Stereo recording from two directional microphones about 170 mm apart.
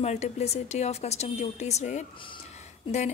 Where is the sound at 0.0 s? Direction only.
40° left (ahead or behind).